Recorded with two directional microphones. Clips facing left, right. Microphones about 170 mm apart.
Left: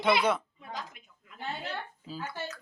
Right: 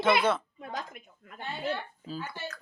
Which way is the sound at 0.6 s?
50° right (ahead or behind).